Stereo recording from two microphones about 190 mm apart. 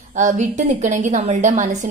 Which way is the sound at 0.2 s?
40° right (ahead or behind).